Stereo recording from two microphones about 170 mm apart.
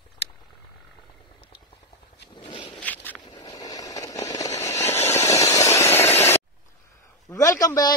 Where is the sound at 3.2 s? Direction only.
25° left (ahead or behind).